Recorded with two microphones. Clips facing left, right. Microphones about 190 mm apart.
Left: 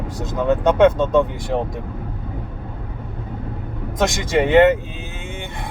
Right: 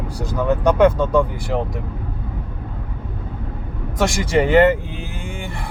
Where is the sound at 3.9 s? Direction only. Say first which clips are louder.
Right 1 dB; 20° left (ahead or behind).